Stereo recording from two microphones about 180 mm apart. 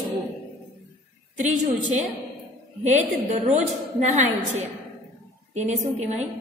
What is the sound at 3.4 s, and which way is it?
A woman's voice, 40° right (ahead or behind).